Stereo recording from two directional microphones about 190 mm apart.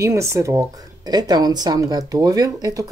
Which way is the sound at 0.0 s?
15° right (ahead or behind).